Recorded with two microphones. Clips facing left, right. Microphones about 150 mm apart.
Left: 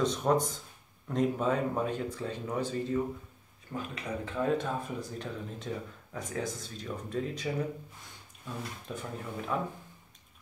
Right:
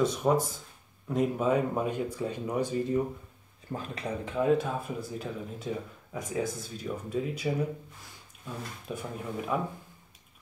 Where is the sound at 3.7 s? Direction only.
35° right (ahead or behind).